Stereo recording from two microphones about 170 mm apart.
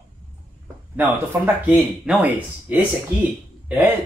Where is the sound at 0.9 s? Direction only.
10° right (ahead or behind).